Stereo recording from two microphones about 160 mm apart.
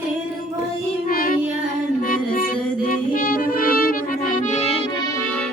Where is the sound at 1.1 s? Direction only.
65° left (ahead or behind).